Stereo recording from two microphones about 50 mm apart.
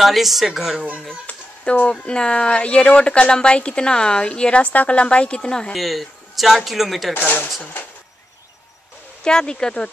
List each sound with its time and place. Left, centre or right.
0.0 s speech: centre
1.2 s speech: left
5.7 s speech: centre
7.2 s speech: left
9.2 s speech: centre